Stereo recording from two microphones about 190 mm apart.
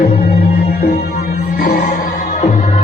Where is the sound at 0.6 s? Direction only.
50° left (ahead or behind).